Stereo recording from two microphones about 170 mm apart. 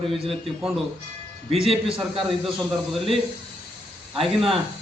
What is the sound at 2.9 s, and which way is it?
Speech, centre (ahead or behind).